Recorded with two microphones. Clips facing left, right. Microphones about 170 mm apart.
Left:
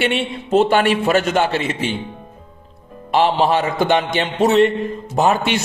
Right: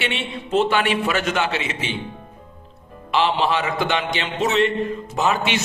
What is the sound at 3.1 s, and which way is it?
A man's voice, 45° left (ahead or behind).